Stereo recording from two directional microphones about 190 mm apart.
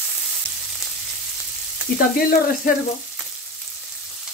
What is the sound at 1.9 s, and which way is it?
Frying, 50° left (ahead or behind).